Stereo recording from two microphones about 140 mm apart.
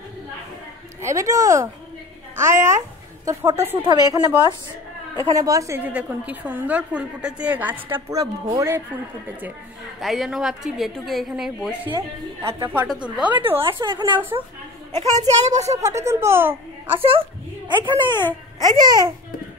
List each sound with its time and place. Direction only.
1.0 s a woman's voice: 20° right (ahead or behind)
3.8 s speech: 30° right (ahead or behind)
5.2 s speech: 25° right (ahead or behind)
5.9 s a woman's voice: 10° right (ahead or behind)
8.1 s speech: 25° right (ahead or behind)
9.9 s a woman's voice: centre (ahead or behind)
12.5 s a woman's voice: 15° right (ahead or behind)
13.6 s a woman's voice: 35° right (ahead or behind)
15.0 s a woman's voice: 50° right (ahead or behind)
15.7 s speech: 20° right (ahead or behind)
17.0 s speech: 40° right (ahead or behind); by 19.1 s 25° right (ahead or behind)